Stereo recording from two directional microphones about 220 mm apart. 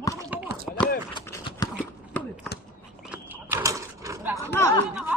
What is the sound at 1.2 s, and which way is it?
Clip-clop, 20° left (ahead or behind).